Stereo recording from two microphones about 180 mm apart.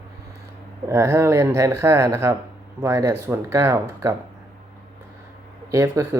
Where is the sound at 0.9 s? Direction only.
15° right (ahead or behind).